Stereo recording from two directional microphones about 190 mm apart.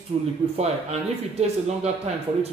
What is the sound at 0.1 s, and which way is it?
Speech, 35° right (ahead or behind).